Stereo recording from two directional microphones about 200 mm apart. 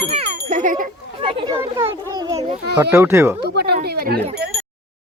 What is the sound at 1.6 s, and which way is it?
Speech, 10° right (ahead or behind).